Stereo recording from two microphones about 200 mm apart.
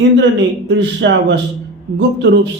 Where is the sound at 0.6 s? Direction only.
65° right (ahead or behind).